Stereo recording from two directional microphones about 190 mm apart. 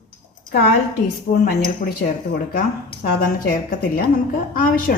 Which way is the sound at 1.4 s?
55° left (ahead or behind).